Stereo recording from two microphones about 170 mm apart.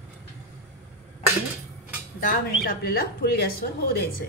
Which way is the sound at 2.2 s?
65° left (ahead or behind).